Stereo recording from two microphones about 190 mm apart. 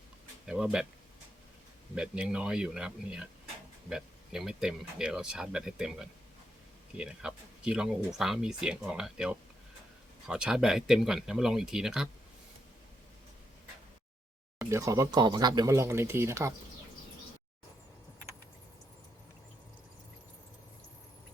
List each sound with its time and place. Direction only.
0.4 s speech: 5° right (ahead or behind)
2.0 s speech: 5° right (ahead or behind)
14.6 s speech: 15° right (ahead or behind)